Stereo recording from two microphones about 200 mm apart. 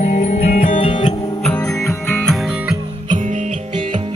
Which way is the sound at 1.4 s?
5° left (ahead or behind).